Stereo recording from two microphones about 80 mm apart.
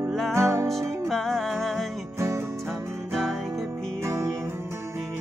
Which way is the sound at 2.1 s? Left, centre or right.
Right.